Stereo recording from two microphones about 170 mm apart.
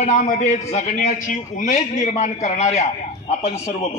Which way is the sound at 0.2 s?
45° left (ahead or behind).